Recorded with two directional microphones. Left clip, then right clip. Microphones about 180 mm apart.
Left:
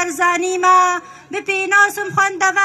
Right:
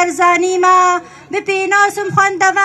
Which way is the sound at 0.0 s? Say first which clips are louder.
Right 5 dB; 45° right (ahead or behind).